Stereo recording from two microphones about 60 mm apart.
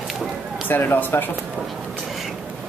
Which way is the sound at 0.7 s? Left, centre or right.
Left.